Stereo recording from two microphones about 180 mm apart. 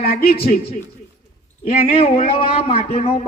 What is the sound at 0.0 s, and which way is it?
Speech, 55° left (ahead or behind).